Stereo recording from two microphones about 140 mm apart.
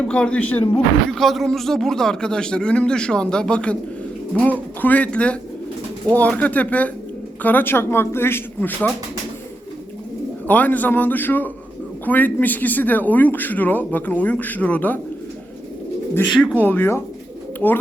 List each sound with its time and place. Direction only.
0.1 s a man's voice: 10° left (ahead or behind)
10.4 s a man's voice: 10° left (ahead or behind)
16.3 s speech: centre (ahead or behind)
16.6 s a man's voice: 15° left (ahead or behind)